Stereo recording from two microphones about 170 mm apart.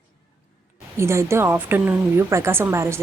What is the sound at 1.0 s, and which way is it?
Speech, 15° right (ahead or behind).